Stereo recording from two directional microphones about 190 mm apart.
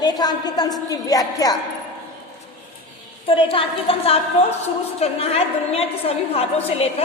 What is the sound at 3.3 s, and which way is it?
A woman's voice, 30° left (ahead or behind).